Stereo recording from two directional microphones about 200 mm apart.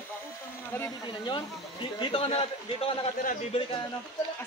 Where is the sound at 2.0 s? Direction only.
25° left (ahead or behind).